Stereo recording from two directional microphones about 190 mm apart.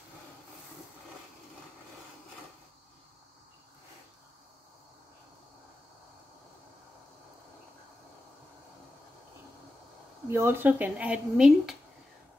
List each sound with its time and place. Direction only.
10.3 s speech: 10° right (ahead or behind)